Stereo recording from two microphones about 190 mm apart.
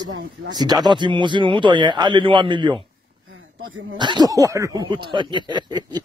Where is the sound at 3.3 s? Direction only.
90° right.